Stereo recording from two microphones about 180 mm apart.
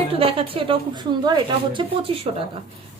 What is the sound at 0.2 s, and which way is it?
A woman's voice, 30° right (ahead or behind).